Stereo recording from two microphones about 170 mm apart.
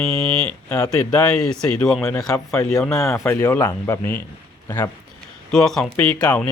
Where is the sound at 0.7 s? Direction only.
20° left (ahead or behind).